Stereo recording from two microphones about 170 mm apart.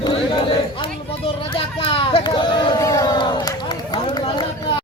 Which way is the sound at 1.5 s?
30° left (ahead or behind).